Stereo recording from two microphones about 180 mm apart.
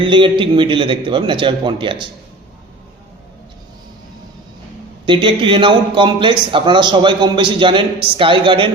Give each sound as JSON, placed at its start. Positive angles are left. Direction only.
{"t": 0.0, "sound": "a man's voice", "side_deg": -30}
{"t": 5.0, "sound": "a man's voice", "side_deg": -25}